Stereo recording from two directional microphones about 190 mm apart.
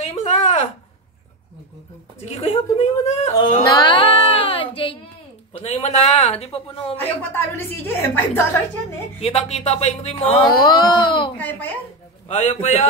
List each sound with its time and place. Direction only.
0.0 s a sound: 35° left (ahead or behind)
2.1 s a man's voice: 35° left (ahead or behind)
3.3 s a sound: 25° left (ahead or behind)
5.5 s a man's voice: 35° left (ahead or behind)
7.0 s a woman's voice: 10° left (ahead or behind)
9.2 s speech: 35° left (ahead or behind)
11.3 s a woman's voice: 10° left (ahead or behind)
12.3 s a man's voice: 35° left (ahead or behind)